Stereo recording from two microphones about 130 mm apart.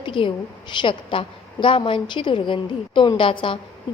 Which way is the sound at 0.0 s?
40° left (ahead or behind).